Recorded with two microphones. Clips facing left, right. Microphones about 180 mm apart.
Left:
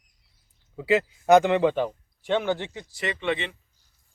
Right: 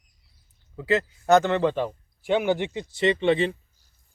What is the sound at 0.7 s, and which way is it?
Speech, 10° left (ahead or behind).